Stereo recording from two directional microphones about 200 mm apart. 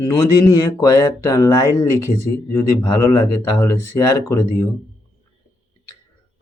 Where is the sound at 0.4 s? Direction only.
15° left (ahead or behind).